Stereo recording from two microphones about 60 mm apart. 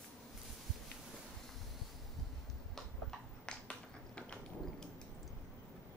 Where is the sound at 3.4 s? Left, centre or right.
Centre.